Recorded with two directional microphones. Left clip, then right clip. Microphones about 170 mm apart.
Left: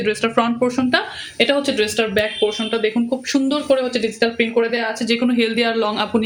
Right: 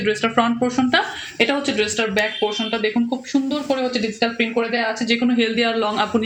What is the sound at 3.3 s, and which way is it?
Speech, 40° left (ahead or behind).